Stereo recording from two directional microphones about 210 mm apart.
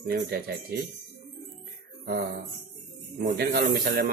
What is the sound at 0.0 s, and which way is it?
Speech, 45° right (ahead or behind).